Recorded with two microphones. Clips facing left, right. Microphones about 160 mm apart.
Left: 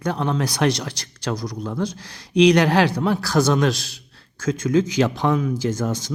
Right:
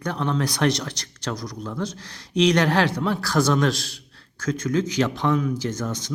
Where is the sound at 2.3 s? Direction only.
15° left (ahead or behind).